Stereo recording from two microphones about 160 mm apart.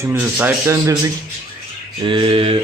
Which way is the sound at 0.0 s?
15° right (ahead or behind).